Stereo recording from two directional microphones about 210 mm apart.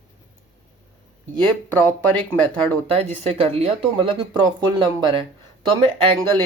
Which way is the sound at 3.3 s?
25° right (ahead or behind).